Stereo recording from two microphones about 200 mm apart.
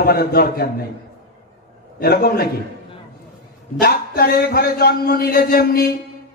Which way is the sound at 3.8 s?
50° left (ahead or behind).